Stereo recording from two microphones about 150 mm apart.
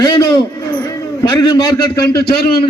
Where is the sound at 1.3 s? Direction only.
30° left (ahead or behind).